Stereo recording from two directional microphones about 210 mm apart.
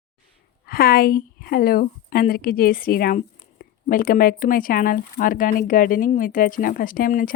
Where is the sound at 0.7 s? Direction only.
45° left (ahead or behind).